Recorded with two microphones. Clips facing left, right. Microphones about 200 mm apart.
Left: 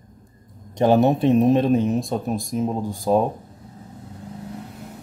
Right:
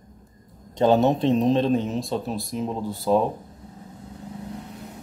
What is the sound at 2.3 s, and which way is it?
Speech, 45° left (ahead or behind).